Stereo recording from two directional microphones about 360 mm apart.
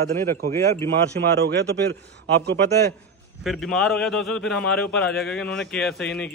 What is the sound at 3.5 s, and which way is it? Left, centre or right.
A man's voice, centre.